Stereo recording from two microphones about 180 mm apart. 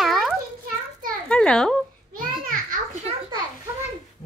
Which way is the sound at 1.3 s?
5° left (ahead or behind).